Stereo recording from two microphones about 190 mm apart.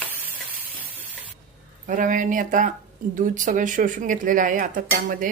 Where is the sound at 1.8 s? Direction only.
45° right (ahead or behind).